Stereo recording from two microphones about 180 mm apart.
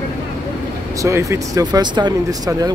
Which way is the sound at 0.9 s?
15° right (ahead or behind).